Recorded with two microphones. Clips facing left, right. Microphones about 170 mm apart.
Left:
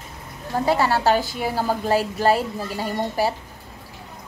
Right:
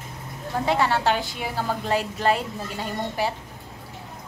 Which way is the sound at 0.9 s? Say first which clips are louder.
Left 4 dB; 35° left (ahead or behind).